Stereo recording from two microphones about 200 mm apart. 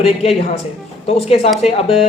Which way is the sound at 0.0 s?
30° left (ahead or behind).